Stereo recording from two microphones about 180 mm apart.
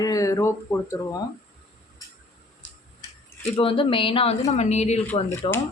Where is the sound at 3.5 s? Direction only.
30° left (ahead or behind).